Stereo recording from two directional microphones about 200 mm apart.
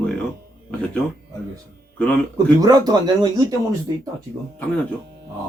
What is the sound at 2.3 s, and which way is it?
Speech, 20° right (ahead or behind).